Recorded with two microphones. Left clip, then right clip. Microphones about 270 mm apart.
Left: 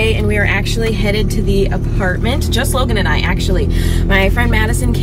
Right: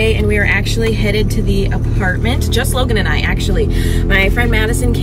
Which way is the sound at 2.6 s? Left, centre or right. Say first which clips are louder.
Right 1 dB; centre.